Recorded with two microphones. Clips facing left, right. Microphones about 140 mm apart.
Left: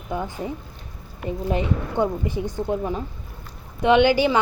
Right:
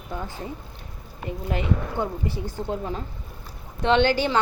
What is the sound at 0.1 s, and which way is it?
A woman's voice, 15° left (ahead or behind).